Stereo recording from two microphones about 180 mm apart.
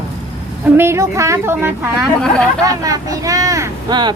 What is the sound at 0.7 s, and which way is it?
Speech, 15° right (ahead or behind).